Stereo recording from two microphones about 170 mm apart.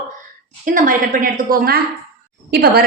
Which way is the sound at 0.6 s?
55° right (ahead or behind).